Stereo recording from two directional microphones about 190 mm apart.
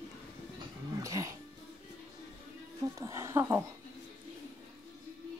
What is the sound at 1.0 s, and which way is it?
Music, 15° right (ahead or behind).